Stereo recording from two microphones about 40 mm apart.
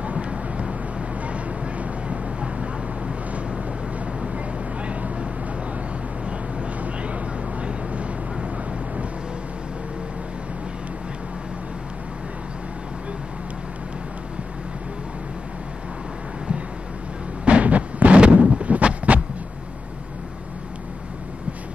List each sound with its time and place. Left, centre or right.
0.0 s vehicle: right
6.2 s vehicle: right
17.5 s a sound: right